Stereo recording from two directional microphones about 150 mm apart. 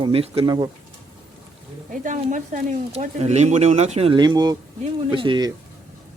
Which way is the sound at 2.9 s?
45° right (ahead or behind).